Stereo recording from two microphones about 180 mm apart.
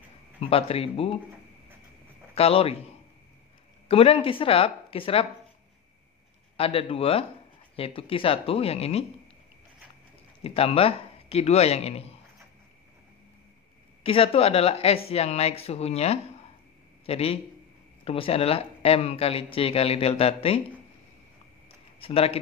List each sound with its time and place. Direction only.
0.4 s speech: 35° left (ahead or behind)
2.3 s speech: 35° left (ahead or behind)
3.9 s speech: 35° left (ahead or behind)
6.5 s speech: 30° left (ahead or behind)
10.4 s speech: 30° left (ahead or behind)
14.0 s speech: 30° left (ahead or behind)
22.0 s speech: 35° left (ahead or behind)